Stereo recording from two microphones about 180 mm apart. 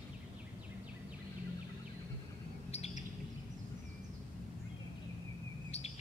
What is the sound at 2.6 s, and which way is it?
Bird, 35° left (ahead or behind).